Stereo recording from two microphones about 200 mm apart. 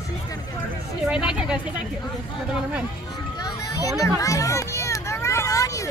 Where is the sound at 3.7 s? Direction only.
15° left (ahead or behind).